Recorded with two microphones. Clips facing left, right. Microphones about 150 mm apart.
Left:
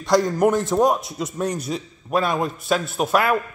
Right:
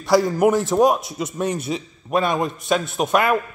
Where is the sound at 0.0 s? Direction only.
5° right (ahead or behind).